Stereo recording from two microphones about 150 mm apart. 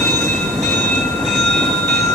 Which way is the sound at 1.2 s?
Centre (ahead or behind).